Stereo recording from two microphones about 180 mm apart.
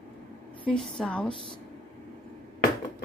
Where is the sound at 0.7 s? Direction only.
5° left (ahead or behind).